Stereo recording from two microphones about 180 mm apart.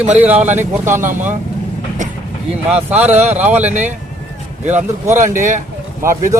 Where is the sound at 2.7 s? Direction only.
10° right (ahead or behind).